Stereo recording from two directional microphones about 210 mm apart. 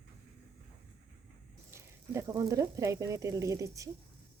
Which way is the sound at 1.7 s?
15° right (ahead or behind).